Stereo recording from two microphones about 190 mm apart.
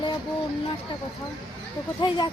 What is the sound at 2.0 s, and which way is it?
Speech, 25° left (ahead or behind).